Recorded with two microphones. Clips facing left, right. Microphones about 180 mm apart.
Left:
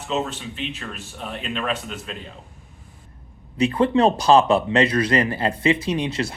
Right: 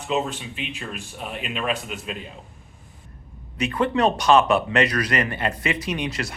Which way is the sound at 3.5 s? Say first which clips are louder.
Left 4 dB; 30° left (ahead or behind).